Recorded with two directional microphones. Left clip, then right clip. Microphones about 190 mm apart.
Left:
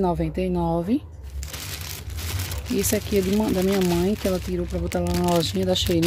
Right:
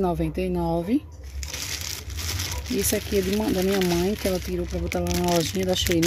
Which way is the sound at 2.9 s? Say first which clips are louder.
Left 2 dB; 10° left (ahead or behind).